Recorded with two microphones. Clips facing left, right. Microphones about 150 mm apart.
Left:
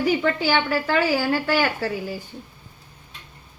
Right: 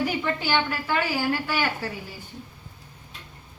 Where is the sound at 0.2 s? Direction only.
85° left.